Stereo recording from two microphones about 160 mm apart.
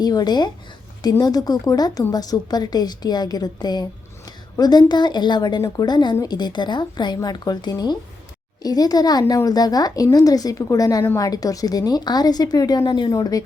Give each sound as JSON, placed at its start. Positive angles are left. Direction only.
{"t": 0.0, "sound": "a woman's voice", "side_deg": 25}